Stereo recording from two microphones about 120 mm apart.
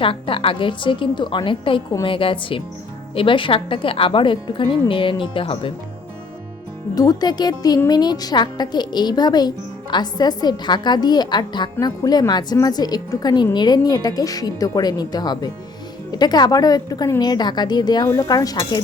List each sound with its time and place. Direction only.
0.0 s a woman's voice: 45° left (ahead or behind)
6.9 s a woman's voice: 30° left (ahead or behind)